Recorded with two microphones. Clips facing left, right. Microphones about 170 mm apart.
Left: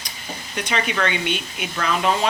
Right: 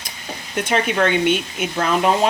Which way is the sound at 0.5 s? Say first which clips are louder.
Right 5 dB; 50° right (ahead or behind).